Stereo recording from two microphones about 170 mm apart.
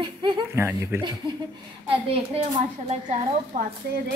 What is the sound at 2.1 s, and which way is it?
Speech, 40° right (ahead or behind).